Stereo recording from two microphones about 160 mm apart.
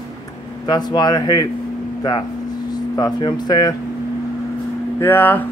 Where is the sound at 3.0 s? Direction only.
25° left (ahead or behind).